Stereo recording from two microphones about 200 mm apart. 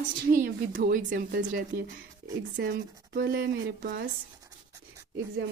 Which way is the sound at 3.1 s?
50° right (ahead or behind).